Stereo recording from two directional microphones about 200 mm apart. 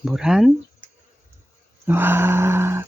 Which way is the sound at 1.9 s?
10° right (ahead or behind).